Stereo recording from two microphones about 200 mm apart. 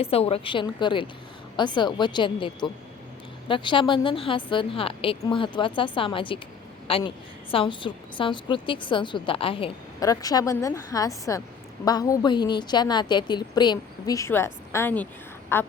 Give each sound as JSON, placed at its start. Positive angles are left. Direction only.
{"t": 0.0, "sound": "a woman's voice", "side_deg": 30}